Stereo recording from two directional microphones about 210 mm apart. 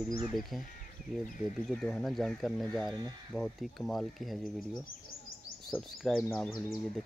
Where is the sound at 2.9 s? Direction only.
20° right (ahead or behind).